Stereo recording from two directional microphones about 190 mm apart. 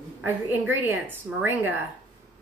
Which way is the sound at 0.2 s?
10° right (ahead or behind).